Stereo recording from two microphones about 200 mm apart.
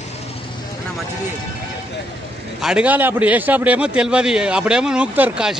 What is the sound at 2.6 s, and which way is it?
A man's voice, 5° right (ahead or behind).